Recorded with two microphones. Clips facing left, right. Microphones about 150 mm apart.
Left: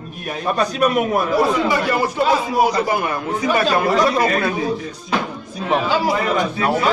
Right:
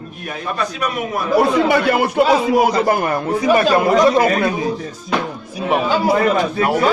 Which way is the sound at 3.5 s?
25° right (ahead or behind).